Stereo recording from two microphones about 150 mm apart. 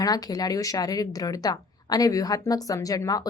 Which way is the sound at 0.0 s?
25° left (ahead or behind).